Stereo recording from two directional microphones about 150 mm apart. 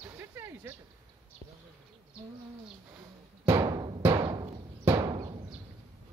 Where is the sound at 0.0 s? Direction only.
15° right (ahead or behind).